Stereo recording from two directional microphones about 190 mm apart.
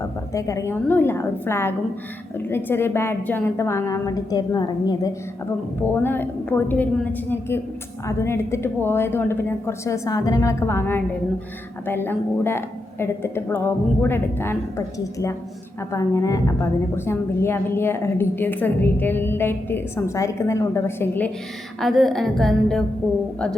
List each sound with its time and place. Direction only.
0.3 s a woman's voice: 15° left (ahead or behind)
5.9 s a woman's voice: 10° left (ahead or behind)
21.8 s a woman's voice: centre (ahead or behind)